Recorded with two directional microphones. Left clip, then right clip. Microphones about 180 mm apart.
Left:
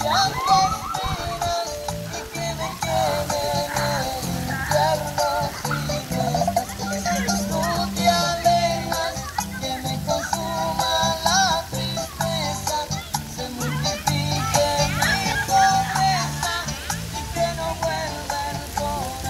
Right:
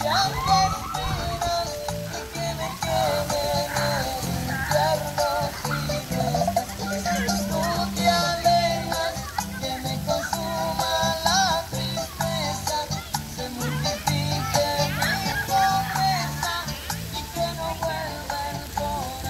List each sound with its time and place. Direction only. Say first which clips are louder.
0.0 s music: left 2 dB; 10° right (ahead or behind)